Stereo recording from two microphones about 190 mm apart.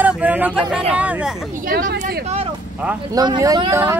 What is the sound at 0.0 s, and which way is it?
Speech, 10° right (ahead or behind).